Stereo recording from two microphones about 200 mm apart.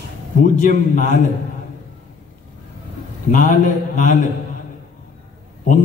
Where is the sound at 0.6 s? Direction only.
40° left (ahead or behind).